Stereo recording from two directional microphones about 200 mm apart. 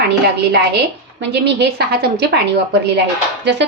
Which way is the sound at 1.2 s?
60° right (ahead or behind).